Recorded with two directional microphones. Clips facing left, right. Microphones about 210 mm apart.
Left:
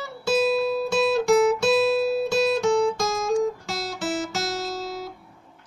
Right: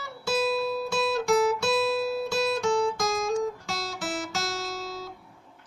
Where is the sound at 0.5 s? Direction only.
20° left (ahead or behind).